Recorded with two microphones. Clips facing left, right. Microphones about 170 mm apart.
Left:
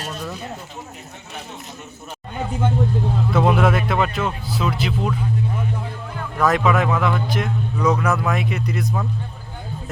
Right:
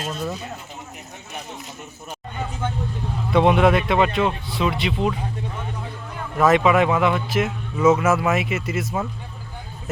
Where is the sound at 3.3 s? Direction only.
Centre (ahead or behind).